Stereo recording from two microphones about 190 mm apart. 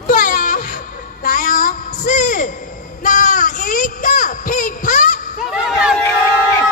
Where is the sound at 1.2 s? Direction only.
45° left (ahead or behind).